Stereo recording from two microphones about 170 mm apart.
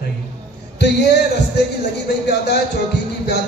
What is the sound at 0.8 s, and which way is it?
Music, 75° left (ahead or behind).